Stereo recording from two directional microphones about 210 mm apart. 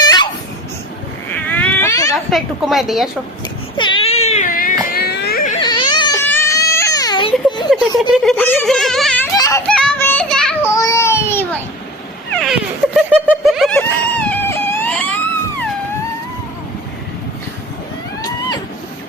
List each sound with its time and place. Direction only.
0.0 s a sound: 20° left (ahead or behind)
1.3 s baby cry: 10° left (ahead or behind)
2.3 s a woman's voice: centre (ahead or behind)
3.8 s baby cry: 25° left (ahead or behind); by 4.7 s 40° left (ahead or behind)
4.9 s music: 50° left (ahead or behind)
5.5 s baby cry: 20° left (ahead or behind)
7.7 s a sound: centre (ahead or behind)
8.1 s speech: centre (ahead or behind)
10.7 s baby cry: 15° left (ahead or behind)
12.3 s cat: centre (ahead or behind)
13.7 s a sound: 10° left (ahead or behind)
18.2 s a sound: 20° left (ahead or behind)